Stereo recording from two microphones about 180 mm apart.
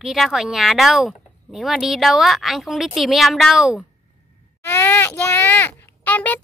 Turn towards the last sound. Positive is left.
turn(degrees=10)  # may be behind; listen again after turning